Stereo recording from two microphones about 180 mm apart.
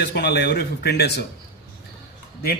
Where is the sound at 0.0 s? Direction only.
65° left (ahead or behind).